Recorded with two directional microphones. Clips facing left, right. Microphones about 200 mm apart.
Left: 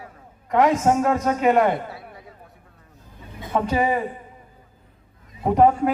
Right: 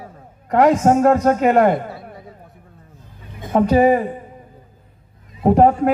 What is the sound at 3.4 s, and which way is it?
Speech, 45° right (ahead or behind).